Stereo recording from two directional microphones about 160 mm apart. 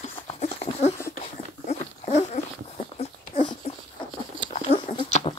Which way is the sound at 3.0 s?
40° left (ahead or behind).